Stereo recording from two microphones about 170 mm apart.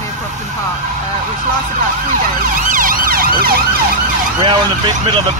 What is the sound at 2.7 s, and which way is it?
Emergency vehicle, 55° right (ahead or behind).